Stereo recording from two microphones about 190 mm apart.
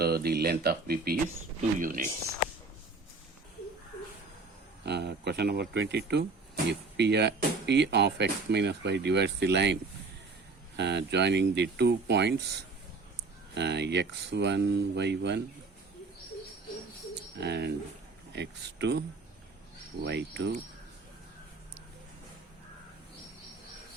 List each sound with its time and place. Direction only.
0.0 s speech: 55° right (ahead or behind)
4.9 s speech: 60° right (ahead or behind)
10.8 s speech: 65° right (ahead or behind)
17.4 s speech: 60° right (ahead or behind)